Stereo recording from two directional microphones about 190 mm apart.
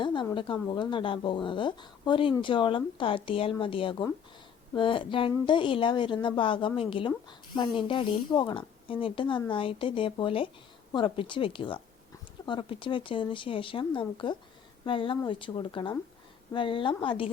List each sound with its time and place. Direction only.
0.0 s a woman's voice: 25° left (ahead or behind)